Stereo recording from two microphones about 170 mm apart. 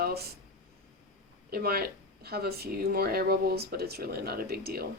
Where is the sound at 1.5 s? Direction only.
65° right (ahead or behind).